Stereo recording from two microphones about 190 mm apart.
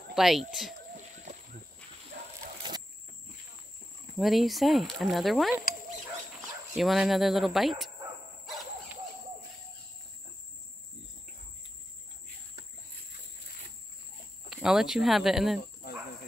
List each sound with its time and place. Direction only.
0.1 s speech: centre (ahead or behind)
0.9 s a sound: 40° right (ahead or behind)
1.8 s dog: 5° left (ahead or behind)
4.2 s speech: centre (ahead or behind)
6.8 s speech: centre (ahead or behind)
14.5 s speech: centre (ahead or behind)
15.6 s dog: 50° left (ahead or behind)